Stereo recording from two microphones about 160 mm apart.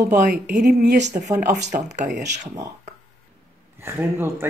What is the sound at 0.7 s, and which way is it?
Speech, 90° right.